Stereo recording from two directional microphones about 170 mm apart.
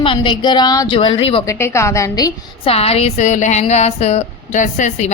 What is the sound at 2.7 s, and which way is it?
Speech, 35° left (ahead or behind).